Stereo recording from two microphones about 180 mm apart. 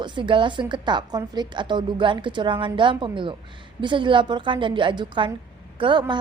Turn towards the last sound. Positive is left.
turn(degrees=-25)  # may be behind; listen again after turning